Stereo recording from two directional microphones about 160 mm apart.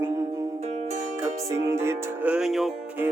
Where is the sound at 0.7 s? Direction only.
40° right (ahead or behind).